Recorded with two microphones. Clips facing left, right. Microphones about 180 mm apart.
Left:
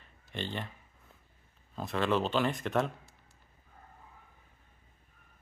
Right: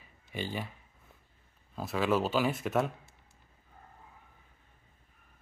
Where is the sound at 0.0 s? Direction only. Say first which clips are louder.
Right 1 dB; 5° right (ahead or behind).